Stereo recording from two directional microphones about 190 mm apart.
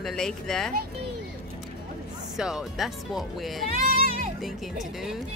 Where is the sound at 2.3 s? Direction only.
Centre (ahead or behind).